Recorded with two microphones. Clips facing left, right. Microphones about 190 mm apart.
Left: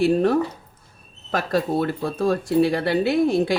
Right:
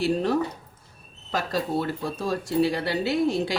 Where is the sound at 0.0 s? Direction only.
55° left (ahead or behind).